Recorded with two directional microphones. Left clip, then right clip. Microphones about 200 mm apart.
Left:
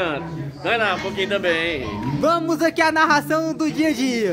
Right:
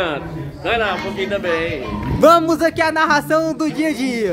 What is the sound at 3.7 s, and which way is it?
Speech, 10° left (ahead or behind).